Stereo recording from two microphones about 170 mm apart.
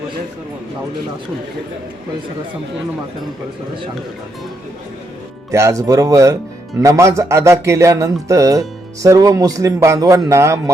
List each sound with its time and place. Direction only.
5.5 s speech: 15° right (ahead or behind)